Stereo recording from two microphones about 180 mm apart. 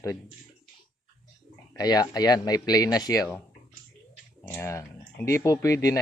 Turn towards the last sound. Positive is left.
turn(degrees=20)  # may be behind; listen again after turning